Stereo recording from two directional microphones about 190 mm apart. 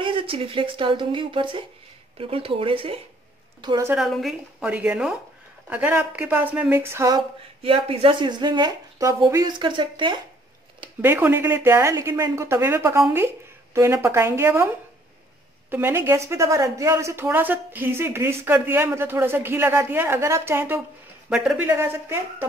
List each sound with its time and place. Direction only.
0.0 s speech: 30° right (ahead or behind)
3.9 s a woman's voice: centre (ahead or behind); by 7.2 s 15° right (ahead or behind)
7.6 s speech: 30° right (ahead or behind)
11.0 s speech: 10° right (ahead or behind)